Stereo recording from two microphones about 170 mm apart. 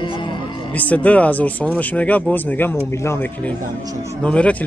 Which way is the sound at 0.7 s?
10° left (ahead or behind).